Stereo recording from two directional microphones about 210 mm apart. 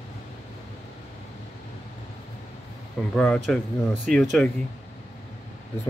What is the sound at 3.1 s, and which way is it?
Speech, 5° left (ahead or behind).